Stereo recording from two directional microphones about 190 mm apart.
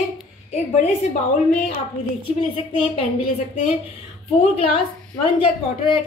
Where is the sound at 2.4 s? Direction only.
30° left (ahead or behind).